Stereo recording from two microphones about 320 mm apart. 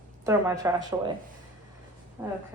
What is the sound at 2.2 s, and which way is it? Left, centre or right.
Speech, centre.